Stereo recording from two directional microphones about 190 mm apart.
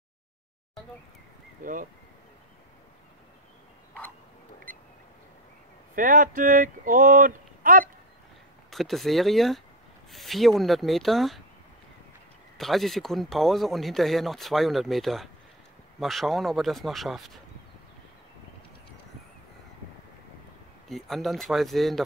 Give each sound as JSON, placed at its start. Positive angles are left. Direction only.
{"t": 1.6, "sound": "speech", "side_deg": -45}
{"t": 5.9, "sound": "speech", "side_deg": -45}
{"t": 8.6, "sound": "speech", "side_deg": 0}
{"t": 12.5, "sound": "speech", "side_deg": 0}
{"t": 20.9, "sound": "speech", "side_deg": 0}